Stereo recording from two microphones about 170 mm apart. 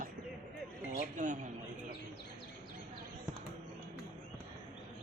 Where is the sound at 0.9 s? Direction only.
45° right (ahead or behind).